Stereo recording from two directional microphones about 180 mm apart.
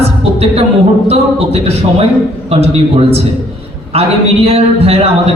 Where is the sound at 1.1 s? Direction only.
35° right (ahead or behind).